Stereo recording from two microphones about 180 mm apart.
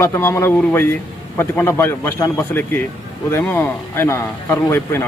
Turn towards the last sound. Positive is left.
turn(degrees=15)  # may be behind; listen again after turning